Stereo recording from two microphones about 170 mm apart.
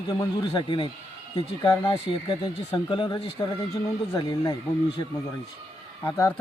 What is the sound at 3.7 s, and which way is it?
Speech, 20° left (ahead or behind).